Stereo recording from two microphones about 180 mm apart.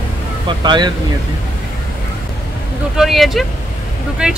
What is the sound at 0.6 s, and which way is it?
Speech, 25° right (ahead or behind).